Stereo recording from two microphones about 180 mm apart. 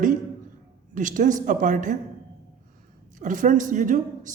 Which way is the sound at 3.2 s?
45° right (ahead or behind).